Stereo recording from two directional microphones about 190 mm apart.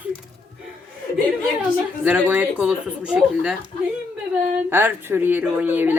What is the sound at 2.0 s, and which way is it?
Speech, 10° right (ahead or behind).